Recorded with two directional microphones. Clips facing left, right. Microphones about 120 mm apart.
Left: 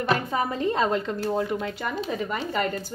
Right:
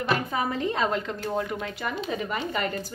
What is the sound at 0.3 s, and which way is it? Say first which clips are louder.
Speech: left 2 dB; 30° left (ahead or behind).